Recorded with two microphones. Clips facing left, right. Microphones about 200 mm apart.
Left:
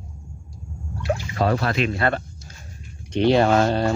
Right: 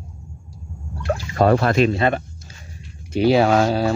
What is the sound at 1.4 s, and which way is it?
Speech, 50° right (ahead or behind).